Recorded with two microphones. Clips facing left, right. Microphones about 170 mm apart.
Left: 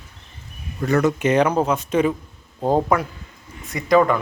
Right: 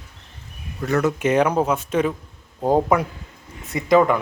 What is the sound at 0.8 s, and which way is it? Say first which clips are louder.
Speech: left 2 dB; centre (ahead or behind).